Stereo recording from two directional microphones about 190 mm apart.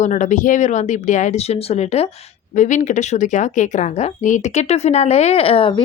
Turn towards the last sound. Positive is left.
turn(degrees=25)  # may be behind; listen again after turning